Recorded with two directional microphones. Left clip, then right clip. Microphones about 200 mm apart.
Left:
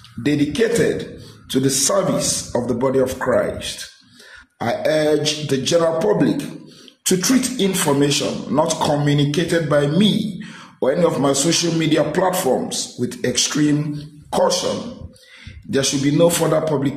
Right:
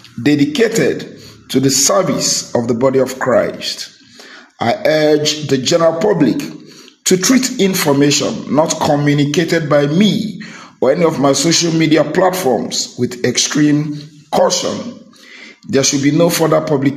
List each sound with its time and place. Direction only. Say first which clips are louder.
0.2 s speech: right 6 dB; 15° right (ahead or behind)
15.7 s speech: right 5 dB; 15° right (ahead or behind)